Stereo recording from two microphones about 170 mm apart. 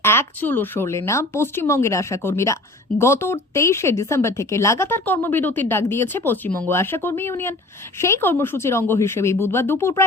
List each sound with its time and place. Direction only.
0.0 s a woman's voice: 15° left (ahead or behind)